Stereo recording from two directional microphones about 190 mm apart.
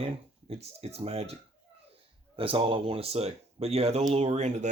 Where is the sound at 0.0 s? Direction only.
30° right (ahead or behind).